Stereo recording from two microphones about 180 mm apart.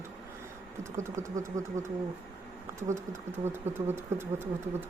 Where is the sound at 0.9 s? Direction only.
15° right (ahead or behind).